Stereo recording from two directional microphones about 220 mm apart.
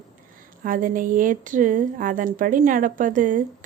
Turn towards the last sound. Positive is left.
turn(degrees=-35)  # may be behind; listen again after turning